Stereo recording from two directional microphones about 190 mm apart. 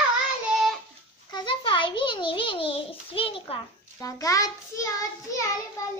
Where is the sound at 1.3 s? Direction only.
25° left (ahead or behind).